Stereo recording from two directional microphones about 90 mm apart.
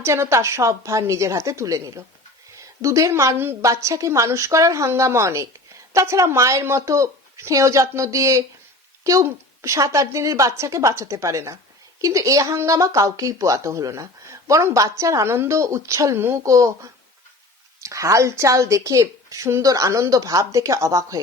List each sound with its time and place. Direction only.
0.0 s speech: 30° right (ahead or behind)